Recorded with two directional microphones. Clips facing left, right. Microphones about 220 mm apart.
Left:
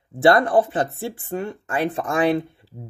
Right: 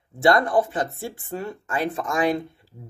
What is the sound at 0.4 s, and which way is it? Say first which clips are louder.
Speech: left 3 dB; 30° left (ahead or behind).